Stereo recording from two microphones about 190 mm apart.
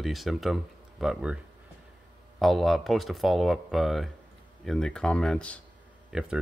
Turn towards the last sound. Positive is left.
turn(degrees=-5)  # may be behind; listen again after turning